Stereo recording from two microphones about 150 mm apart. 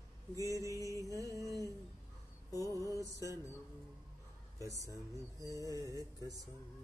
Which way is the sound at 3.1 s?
20° right (ahead or behind).